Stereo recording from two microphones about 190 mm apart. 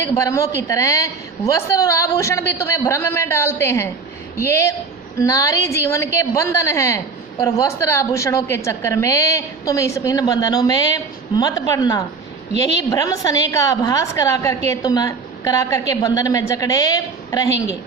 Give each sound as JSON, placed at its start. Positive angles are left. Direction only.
{"t": 0.2, "sound": "a woman's voice", "side_deg": 15}